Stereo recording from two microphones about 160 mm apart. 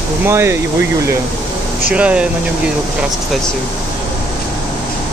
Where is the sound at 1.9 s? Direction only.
5° right (ahead or behind).